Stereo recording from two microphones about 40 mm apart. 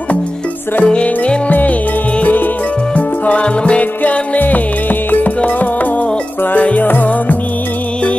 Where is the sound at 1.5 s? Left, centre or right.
Left.